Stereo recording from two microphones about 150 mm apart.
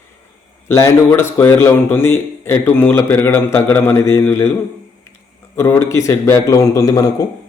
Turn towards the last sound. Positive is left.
turn(degrees=25)  # may be behind; listen again after turning